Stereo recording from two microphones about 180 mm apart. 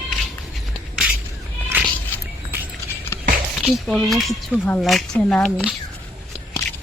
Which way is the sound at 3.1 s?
15° left (ahead or behind).